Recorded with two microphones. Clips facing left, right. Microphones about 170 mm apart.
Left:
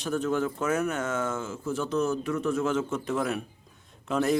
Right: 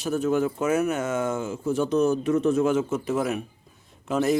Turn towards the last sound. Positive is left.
turn(degrees=-5)  # may be behind; listen again after turning